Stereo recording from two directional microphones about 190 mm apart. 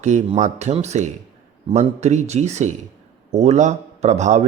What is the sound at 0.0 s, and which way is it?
A man's voice, 35° right (ahead or behind).